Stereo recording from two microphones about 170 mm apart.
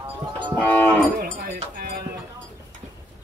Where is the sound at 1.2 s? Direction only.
50° right (ahead or behind).